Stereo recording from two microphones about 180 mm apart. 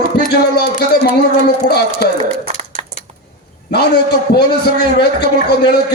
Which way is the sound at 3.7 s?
65° left (ahead or behind).